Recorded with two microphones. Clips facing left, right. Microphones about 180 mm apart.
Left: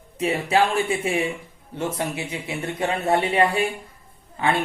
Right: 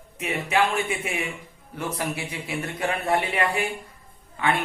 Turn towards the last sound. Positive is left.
turn(degrees=25)  # may be behind; listen again after turning